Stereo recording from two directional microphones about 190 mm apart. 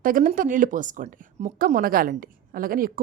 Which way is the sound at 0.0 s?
45° right (ahead or behind).